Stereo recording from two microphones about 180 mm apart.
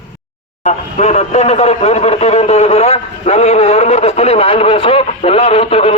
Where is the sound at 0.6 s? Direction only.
35° left (ahead or behind).